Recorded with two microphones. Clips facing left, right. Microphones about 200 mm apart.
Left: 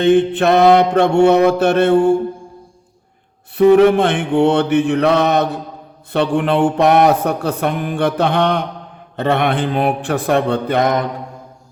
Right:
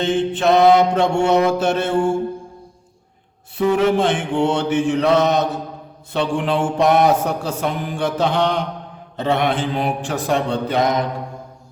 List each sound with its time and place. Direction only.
0.0 s speech: 60° left (ahead or behind)
3.6 s speech: 60° left (ahead or behind)